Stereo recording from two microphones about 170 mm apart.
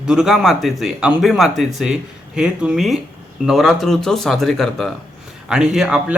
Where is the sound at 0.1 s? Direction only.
5° right (ahead or behind).